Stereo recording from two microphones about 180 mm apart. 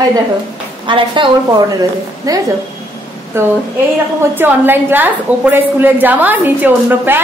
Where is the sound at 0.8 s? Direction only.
30° right (ahead or behind).